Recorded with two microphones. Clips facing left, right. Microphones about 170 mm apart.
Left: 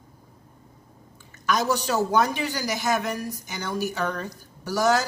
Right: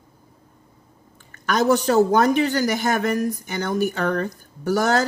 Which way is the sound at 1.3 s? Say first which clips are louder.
Right 5 dB; 55° right (ahead or behind).